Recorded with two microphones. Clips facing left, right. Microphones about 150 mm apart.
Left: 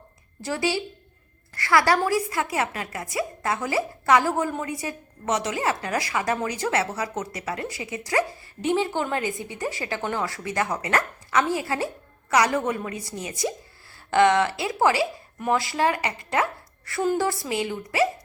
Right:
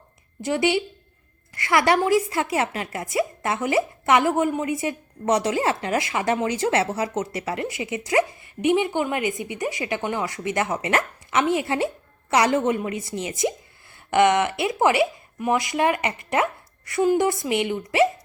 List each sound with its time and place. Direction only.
0.4 s a woman's voice: 20° right (ahead or behind)
16.3 s chopping: 20° right (ahead or behind)
17.2 s a woman's voice: 20° right (ahead or behind)